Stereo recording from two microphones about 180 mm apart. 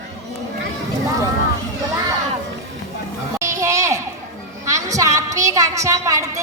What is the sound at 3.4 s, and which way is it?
Children playing, 15° right (ahead or behind).